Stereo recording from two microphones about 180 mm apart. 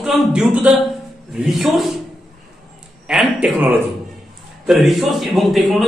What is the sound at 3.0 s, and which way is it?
A man's voice, 5° right (ahead or behind).